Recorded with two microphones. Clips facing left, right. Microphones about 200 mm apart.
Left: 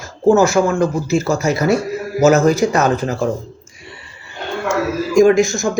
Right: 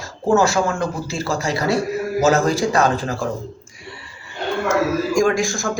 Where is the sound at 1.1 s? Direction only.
20° left (ahead or behind).